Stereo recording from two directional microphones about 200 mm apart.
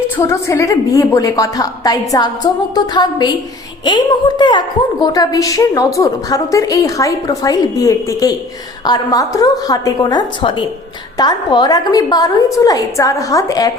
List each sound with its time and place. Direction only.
0.2 s a woman's voice: 15° left (ahead or behind)